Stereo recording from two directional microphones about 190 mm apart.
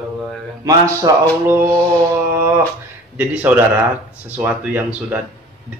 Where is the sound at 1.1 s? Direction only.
20° right (ahead or behind).